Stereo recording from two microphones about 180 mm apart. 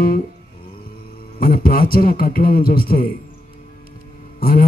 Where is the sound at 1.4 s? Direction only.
55° left (ahead or behind).